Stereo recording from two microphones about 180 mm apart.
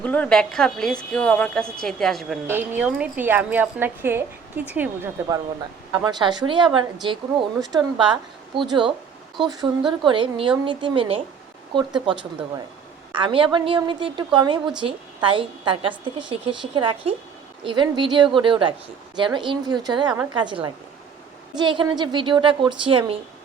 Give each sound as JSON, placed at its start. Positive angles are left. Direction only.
{"t": 0.0, "sound": "a woman's voice", "side_deg": 10}
{"t": 2.5, "sound": "a woman's voice", "side_deg": -10}